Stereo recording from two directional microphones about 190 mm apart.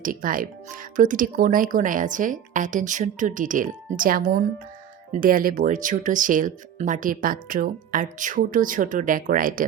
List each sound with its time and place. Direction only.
0.0 s speech: 45° right (ahead or behind)